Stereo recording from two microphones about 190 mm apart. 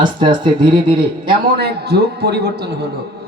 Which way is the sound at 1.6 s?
60° right (ahead or behind).